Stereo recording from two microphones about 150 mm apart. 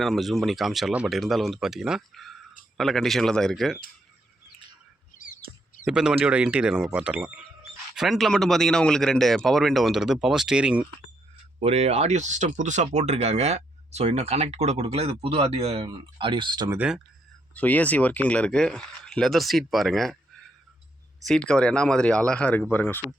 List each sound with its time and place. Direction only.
0.0 s speech: centre (ahead or behind)
5.8 s speech: 5° right (ahead or behind)
11.6 s speech: 45° right (ahead or behind)
16.6 s speech: 10° right (ahead or behind)
17.5 s speech: 10° left (ahead or behind)
21.2 s speech: 5° left (ahead or behind)